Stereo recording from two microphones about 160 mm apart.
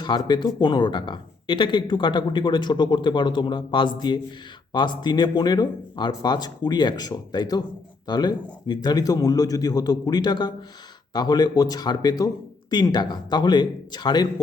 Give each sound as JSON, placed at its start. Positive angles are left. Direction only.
{"t": 0.3, "sound": "speech", "side_deg": 25}